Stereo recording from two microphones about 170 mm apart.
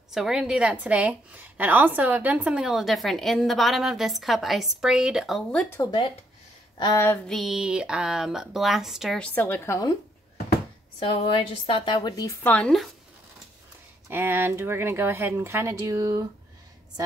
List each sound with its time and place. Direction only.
0.1 s a woman's voice: 5° right (ahead or behind)
6.8 s female singing: 20° left (ahead or behind)
7.2 s a woman's voice: centre (ahead or behind); by 9.9 s 15° left (ahead or behind)
11.1 s a woman's voice: 30° left (ahead or behind)
12.4 s a woman's voice: 5° left (ahead or behind)
14.0 s speech: 15° right (ahead or behind)